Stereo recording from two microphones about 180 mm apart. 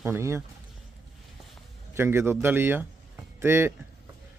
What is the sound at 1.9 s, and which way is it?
A man's voice, 15° right (ahead or behind).